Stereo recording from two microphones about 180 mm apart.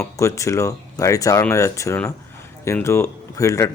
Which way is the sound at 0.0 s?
15° left (ahead or behind).